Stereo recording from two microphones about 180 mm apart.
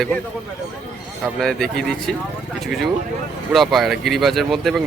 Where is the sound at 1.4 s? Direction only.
5° left (ahead or behind).